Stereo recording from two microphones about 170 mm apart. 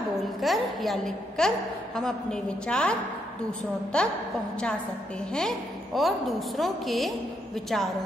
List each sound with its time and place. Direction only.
0.4 s a woman's voice: centre (ahead or behind)
5.3 s a woman's voice: 5° left (ahead or behind)